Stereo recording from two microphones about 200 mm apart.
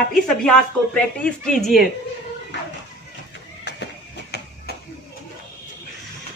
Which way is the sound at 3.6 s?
60° left (ahead or behind).